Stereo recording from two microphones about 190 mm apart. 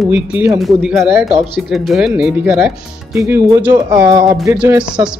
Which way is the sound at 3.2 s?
15° right (ahead or behind).